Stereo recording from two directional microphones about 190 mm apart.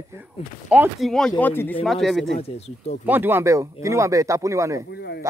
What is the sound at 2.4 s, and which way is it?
Speech, 35° left (ahead or behind).